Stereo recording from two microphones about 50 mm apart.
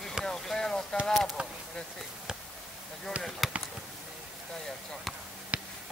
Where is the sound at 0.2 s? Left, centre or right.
Centre.